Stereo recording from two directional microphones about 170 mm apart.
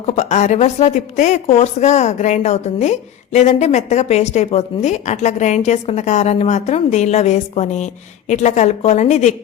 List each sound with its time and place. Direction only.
0.0 s a woman's voice: 40° left (ahead or behind)